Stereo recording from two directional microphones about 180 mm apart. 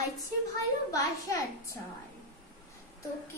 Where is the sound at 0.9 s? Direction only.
15° left (ahead or behind).